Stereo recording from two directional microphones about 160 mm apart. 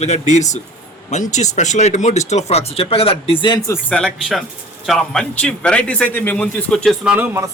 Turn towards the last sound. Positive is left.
turn(degrees=-5)  # may be behind; listen again after turning